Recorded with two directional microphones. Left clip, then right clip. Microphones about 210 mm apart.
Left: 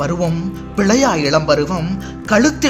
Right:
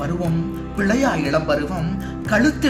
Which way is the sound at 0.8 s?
50° left (ahead or behind).